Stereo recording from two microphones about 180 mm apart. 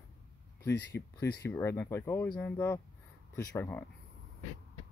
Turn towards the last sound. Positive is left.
turn(degrees=15)  # may be behind; listen again after turning